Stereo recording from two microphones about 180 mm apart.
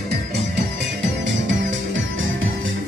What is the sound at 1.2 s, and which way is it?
Music, 90° right.